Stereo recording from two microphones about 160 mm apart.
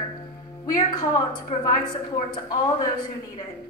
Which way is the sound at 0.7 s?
25° left (ahead or behind).